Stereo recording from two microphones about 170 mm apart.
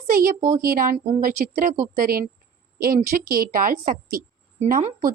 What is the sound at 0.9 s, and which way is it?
Speech, 40° right (ahead or behind).